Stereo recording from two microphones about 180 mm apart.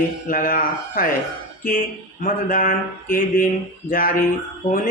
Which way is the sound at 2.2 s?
50° left (ahead or behind).